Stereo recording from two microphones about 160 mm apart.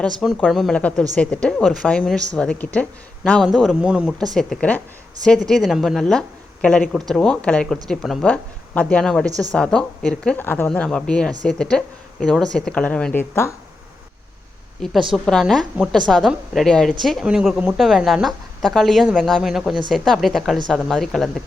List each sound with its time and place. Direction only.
0.4 s a woman's voice: centre (ahead or behind)
9.2 s a woman's voice: 20° right (ahead or behind)
9.5 s a woman's voice: 5° left (ahead or behind)
15.1 s a woman's voice: centre (ahead or behind)